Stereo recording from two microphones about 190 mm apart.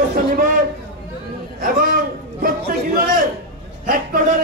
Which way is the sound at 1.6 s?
45° right (ahead or behind).